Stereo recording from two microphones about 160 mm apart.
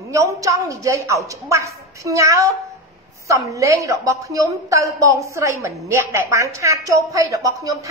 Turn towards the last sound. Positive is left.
turn(degrees=-20)  # may be behind; listen again after turning